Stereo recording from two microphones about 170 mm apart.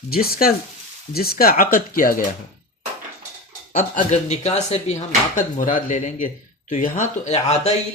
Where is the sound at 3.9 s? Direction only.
40° left (ahead or behind).